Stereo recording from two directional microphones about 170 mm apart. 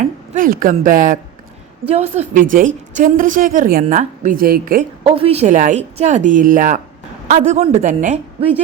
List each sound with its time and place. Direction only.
0.0 s speech: 50° right (ahead or behind)
1.9 s a woman's voice: 40° right (ahead or behind); by 4.9 s 60° right (ahead or behind)
5.0 s a woman's voice: 35° right (ahead or behind)